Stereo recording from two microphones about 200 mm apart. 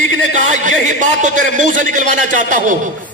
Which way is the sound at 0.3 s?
40° right (ahead or behind).